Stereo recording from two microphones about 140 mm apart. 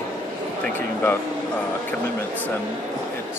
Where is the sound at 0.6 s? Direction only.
15° left (ahead or behind).